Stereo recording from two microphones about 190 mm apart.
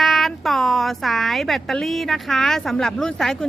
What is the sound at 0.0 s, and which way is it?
A woman's voice, centre (ahead or behind).